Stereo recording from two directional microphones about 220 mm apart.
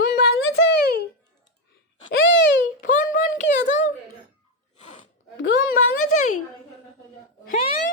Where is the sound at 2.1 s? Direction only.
60° left (ahead or behind).